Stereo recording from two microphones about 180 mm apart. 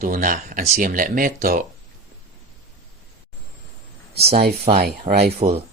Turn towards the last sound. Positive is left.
turn(degrees=-40)  # may be behind; listen again after turning